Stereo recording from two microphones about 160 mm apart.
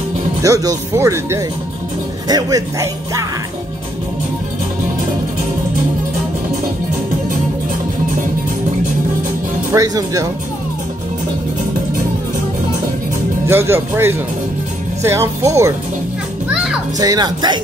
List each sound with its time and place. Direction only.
0.4 s speech: 20° right (ahead or behind)
9.7 s speech: 20° right (ahead or behind)
13.5 s speech: 15° right (ahead or behind)
17.0 s speech: 25° right (ahead or behind)